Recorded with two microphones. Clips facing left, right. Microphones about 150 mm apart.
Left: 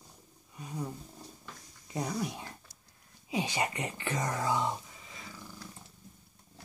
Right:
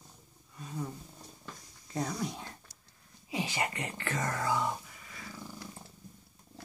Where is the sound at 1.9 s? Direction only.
15° left (ahead or behind).